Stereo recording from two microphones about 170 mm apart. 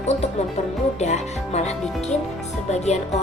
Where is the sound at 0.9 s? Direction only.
40° left (ahead or behind).